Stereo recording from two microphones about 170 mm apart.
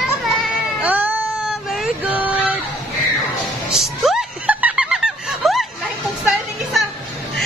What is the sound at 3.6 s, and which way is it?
Snicker, centre (ahead or behind).